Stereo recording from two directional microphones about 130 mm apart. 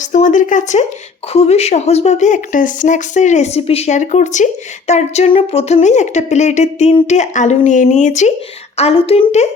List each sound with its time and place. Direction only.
0.0 s speech: 75° left (ahead or behind)
1.3 s speech: 50° left (ahead or behind)
8.8 s a woman's voice: 45° left (ahead or behind)